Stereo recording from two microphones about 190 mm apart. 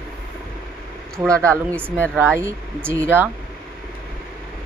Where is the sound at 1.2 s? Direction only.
15° right (ahead or behind).